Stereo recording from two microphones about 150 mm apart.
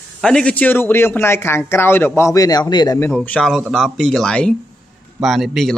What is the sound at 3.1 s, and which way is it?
A man's voice, 5° left (ahead or behind).